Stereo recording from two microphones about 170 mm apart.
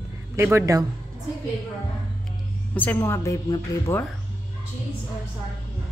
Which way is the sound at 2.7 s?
10° left (ahead or behind).